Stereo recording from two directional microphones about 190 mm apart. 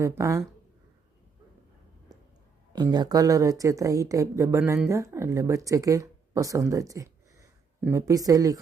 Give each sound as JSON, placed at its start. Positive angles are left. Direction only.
{"t": 0.0, "sound": "speech", "side_deg": -15}
{"t": 2.1, "sound": "a sound", "side_deg": -20}
{"t": 2.7, "sound": "speech", "side_deg": -20}